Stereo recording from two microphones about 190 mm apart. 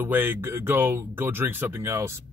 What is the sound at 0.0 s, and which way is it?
Speech, 10° right (ahead or behind).